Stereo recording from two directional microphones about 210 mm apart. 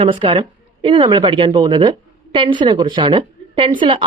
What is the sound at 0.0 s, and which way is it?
Speech, 25° right (ahead or behind).